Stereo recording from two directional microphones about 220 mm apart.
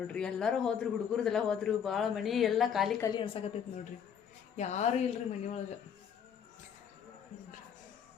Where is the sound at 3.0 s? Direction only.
25° left (ahead or behind).